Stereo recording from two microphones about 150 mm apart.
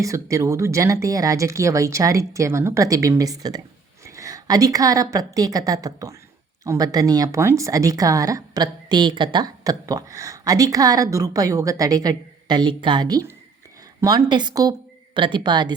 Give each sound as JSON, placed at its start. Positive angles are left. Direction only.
{"t": 0.0, "sound": "a woman's voice", "side_deg": -20}